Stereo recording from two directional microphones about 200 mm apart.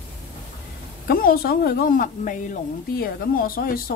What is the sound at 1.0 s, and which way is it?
A woman's voice, 45° left (ahead or behind).